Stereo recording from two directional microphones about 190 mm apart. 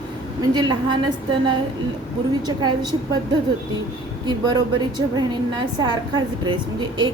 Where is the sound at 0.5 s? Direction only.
25° right (ahead or behind).